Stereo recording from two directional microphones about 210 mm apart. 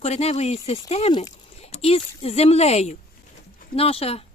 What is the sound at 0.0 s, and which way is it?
Speech, 30° left (ahead or behind).